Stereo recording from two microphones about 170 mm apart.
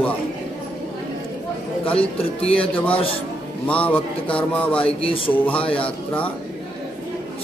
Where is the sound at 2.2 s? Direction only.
35° left (ahead or behind).